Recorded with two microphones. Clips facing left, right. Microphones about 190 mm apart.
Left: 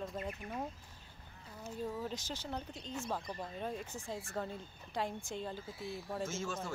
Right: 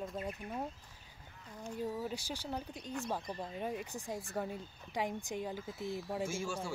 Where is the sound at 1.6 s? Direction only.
10° right (ahead or behind).